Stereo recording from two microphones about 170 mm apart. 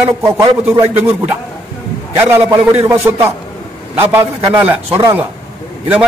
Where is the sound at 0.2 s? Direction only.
15° right (ahead or behind).